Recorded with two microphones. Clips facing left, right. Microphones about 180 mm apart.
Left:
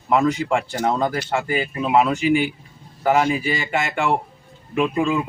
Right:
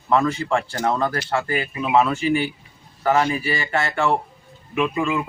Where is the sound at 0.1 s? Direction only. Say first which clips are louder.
Left 1 dB; 15° left (ahead or behind).